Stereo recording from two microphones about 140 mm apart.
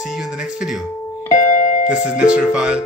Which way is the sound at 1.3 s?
55° left (ahead or behind).